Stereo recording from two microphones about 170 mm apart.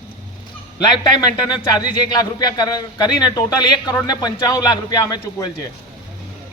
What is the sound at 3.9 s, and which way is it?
A man's voice, 25° left (ahead or behind).